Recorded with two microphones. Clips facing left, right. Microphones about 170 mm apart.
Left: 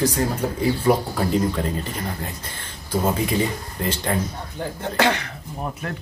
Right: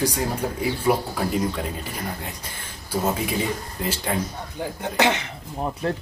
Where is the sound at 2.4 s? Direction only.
10° right (ahead or behind).